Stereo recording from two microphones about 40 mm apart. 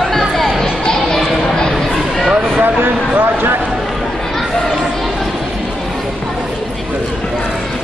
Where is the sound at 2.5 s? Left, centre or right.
Right.